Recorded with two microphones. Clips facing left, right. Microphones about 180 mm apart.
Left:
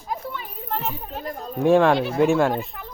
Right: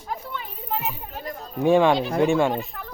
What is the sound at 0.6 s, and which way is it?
Children playing, 5° right (ahead or behind).